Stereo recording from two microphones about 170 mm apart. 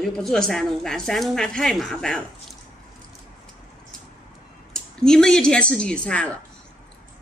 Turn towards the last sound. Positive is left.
turn(degrees=5)  # may be behind; listen again after turning